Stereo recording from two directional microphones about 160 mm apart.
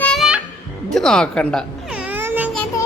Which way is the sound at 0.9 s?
5° left (ahead or behind).